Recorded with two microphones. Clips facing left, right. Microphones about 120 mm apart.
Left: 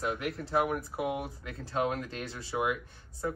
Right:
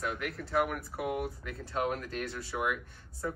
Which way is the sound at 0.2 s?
30° left (ahead or behind).